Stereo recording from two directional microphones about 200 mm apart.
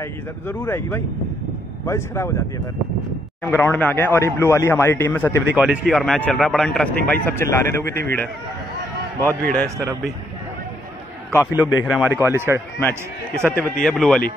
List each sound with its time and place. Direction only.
0.0 s speech: 10° left (ahead or behind)
3.4 s speech: 10° left (ahead or behind)
5.5 s a man's voice: 5° right (ahead or behind); by 8.0 s 15° left (ahead or behind)
9.4 s a man's voice: 50° right (ahead or behind)
11.5 s a man's voice: 10° right (ahead or behind)
12.8 s a man's voice: 5° left (ahead or behind)